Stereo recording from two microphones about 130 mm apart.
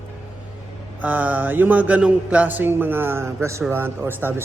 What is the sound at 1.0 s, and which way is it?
Speech, 10° right (ahead or behind).